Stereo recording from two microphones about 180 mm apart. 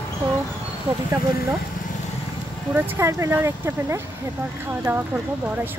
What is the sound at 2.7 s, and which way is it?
Speech, 10° right (ahead or behind).